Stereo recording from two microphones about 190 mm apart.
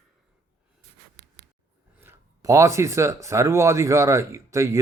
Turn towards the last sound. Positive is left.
turn(degrees=-15)  # may be behind; listen again after turning